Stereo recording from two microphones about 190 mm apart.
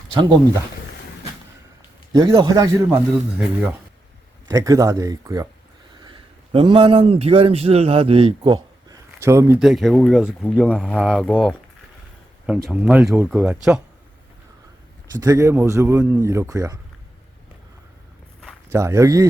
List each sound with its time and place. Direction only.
0.1 s speech: 25° right (ahead or behind)
2.1 s a man's voice: 25° right (ahead or behind)
3.1 s speech: 5° right (ahead or behind)
4.4 s a man's voice: 20° right (ahead or behind)
15.1 s speech: 20° right (ahead or behind)
18.7 s speech: 15° right (ahead or behind)